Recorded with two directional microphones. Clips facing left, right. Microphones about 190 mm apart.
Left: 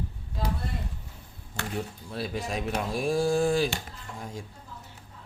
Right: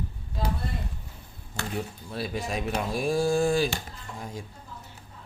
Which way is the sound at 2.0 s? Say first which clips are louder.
Right 1 dB; 5° right (ahead or behind).